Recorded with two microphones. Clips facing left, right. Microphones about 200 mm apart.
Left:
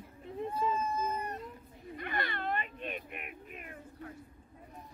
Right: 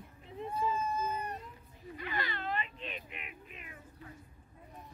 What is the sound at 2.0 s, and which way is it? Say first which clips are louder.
Cat: left 2 dB; 60° left (ahead or behind).